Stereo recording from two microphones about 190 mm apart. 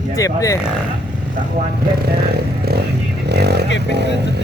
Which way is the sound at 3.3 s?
60° right (ahead or behind).